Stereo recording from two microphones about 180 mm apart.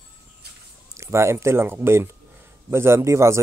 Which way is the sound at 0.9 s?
15° right (ahead or behind).